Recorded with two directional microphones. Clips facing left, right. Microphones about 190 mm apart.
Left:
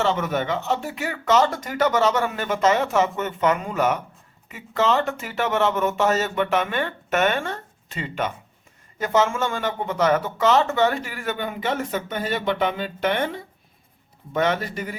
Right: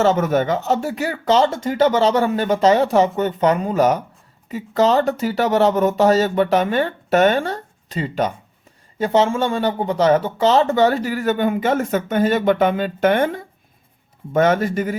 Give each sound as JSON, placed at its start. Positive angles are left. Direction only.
{"t": 0.0, "sound": "a man's voice", "side_deg": -45}